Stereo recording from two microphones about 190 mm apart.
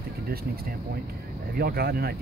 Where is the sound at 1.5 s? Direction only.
55° right (ahead or behind).